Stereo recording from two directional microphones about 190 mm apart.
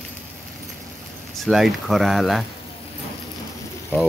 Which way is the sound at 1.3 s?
Centre (ahead or behind).